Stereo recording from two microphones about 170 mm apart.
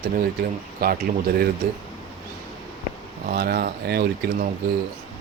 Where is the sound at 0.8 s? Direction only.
65° right (ahead or behind).